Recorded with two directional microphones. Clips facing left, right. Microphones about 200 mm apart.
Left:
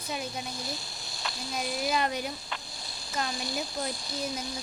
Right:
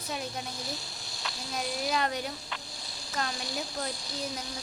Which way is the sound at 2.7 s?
55° left (ahead or behind).